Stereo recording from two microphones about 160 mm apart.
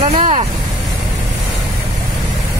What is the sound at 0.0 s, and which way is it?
Vehicle, 40° right (ahead or behind).